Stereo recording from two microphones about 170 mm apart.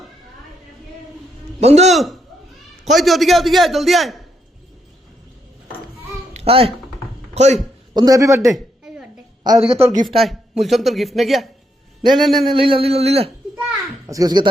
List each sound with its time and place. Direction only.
1.6 s speech: 40° right (ahead or behind)
1.9 s a man's voice: centre (ahead or behind)
6.3 s a sound: 35° right (ahead or behind)
7.3 s speech: 40° right (ahead or behind)
7.9 s a man's voice: 20° right (ahead or behind)
8.5 s a sound: 5° right (ahead or behind)
9.4 s a man's voice: 30° right (ahead or behind)
10.2 s speech: centre (ahead or behind)
12.5 s speech: 30° right (ahead or behind)
14.1 s a man's voice: 20° right (ahead or behind)